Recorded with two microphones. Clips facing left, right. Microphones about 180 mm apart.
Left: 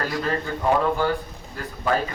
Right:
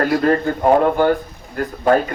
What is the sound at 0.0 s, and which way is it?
Speech, 55° right (ahead or behind).